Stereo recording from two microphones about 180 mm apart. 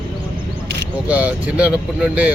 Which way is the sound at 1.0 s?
5° right (ahead or behind).